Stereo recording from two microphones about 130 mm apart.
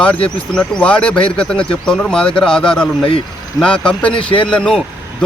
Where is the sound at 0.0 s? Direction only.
10° left (ahead or behind).